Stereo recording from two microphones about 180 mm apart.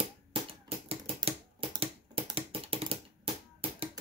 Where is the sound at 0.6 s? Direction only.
30° right (ahead or behind).